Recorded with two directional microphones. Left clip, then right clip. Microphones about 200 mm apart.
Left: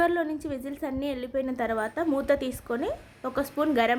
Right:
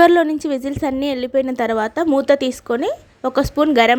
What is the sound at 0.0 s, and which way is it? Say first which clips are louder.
A woman's voice: right 13 dB; 50° right (ahead or behind).